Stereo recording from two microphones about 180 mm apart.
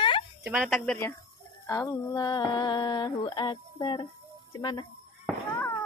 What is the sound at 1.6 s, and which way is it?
Mantra, 15° left (ahead or behind).